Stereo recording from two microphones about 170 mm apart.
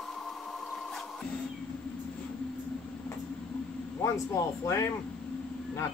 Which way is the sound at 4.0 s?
15° left (ahead or behind).